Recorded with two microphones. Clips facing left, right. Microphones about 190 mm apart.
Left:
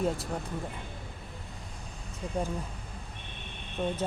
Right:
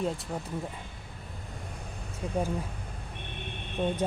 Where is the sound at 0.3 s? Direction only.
5° right (ahead or behind).